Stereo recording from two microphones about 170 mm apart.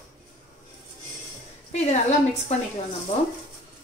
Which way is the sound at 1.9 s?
40° left (ahead or behind).